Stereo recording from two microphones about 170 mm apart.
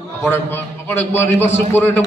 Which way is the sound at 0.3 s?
15° left (ahead or behind).